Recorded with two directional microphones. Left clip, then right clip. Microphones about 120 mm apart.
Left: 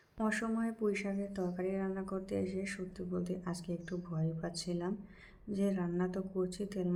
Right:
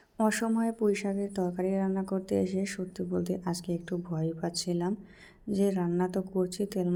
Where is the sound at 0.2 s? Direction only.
55° right (ahead or behind).